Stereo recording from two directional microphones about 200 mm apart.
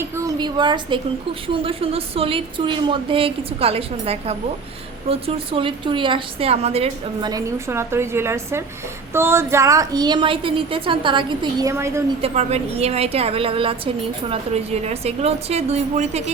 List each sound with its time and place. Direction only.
0.0 s a woman's voice: 15° right (ahead or behind)
11.7 s a woman's voice: 15° right (ahead or behind)
12.2 s a woman's voice: 30° right (ahead or behind)